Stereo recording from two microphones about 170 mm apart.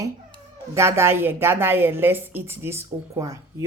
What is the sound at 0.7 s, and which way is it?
A woman's voice, 15° right (ahead or behind).